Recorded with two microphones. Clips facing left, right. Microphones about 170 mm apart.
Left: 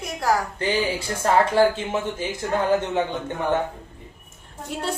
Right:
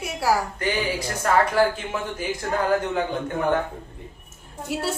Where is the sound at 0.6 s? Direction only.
30° left (ahead or behind).